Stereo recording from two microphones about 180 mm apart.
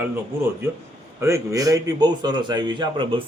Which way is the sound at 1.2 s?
15° right (ahead or behind).